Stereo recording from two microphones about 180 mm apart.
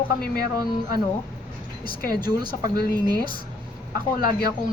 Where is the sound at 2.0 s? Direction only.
55° left (ahead or behind).